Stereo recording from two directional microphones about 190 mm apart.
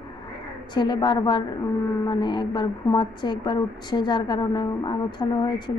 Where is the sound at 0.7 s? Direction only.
25° left (ahead or behind).